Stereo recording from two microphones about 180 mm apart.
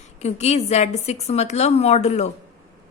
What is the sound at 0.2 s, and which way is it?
Speech, 40° left (ahead or behind).